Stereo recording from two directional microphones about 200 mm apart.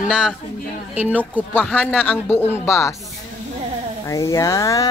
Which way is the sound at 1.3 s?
10° left (ahead or behind).